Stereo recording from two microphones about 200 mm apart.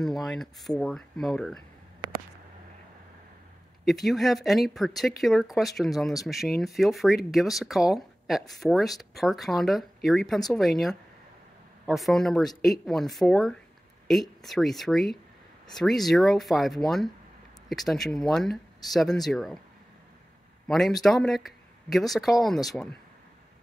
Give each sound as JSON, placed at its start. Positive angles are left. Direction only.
{"t": 0.0, "sound": "speech", "side_deg": 0}
{"t": 2.0, "sound": "a sound", "side_deg": -20}
{"t": 3.8, "sound": "speech", "side_deg": 0}
{"t": 20.6, "sound": "speech", "side_deg": 0}